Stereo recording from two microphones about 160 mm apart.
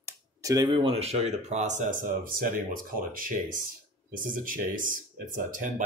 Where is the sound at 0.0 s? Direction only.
20° right (ahead or behind).